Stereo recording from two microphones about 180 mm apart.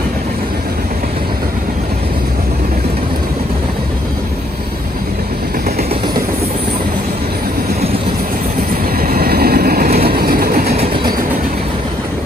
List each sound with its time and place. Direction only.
8.9 s train: 55° right (ahead or behind)